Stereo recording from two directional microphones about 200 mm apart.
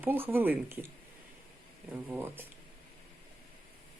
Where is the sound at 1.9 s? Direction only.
10° right (ahead or behind).